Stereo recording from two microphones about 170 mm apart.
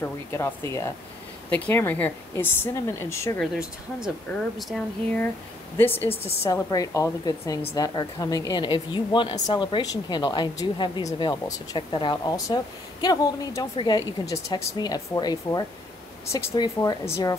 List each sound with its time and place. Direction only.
0.0 s a woman's voice: 15° left (ahead or behind)
3.3 s speech: centre (ahead or behind)
5.8 s a woman's voice: 10° left (ahead or behind)